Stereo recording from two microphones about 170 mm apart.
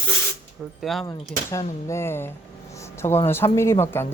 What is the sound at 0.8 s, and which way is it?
Speech, centre (ahead or behind).